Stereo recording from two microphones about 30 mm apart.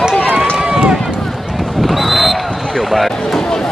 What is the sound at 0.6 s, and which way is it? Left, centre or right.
Run, right.